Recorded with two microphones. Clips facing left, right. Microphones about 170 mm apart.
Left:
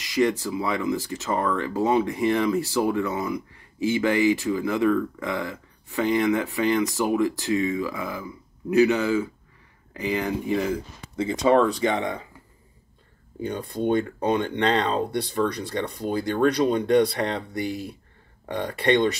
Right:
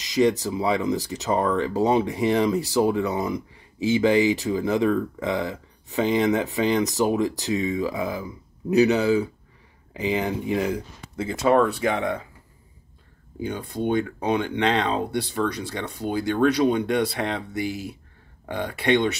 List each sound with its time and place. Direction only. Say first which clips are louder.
0.0 s speech: right 2 dB; 20° right (ahead or behind)
11.1 s speech: even; 5° right (ahead or behind)
13.4 s speech: even; 5° right (ahead or behind)